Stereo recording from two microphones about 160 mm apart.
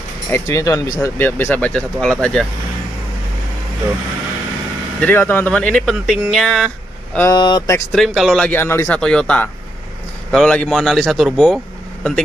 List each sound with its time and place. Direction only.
0.3 s speech: 20° left (ahead or behind); by 2.4 s 5° left (ahead or behind)
5.0 s speech: 15° left (ahead or behind)
7.3 s speech: 25° left (ahead or behind)
7.9 s speech: centre (ahead or behind)
8.5 s speech: 15° left (ahead or behind)